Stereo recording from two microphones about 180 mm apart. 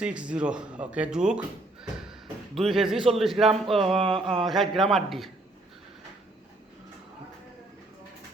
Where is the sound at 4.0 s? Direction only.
30° right (ahead or behind).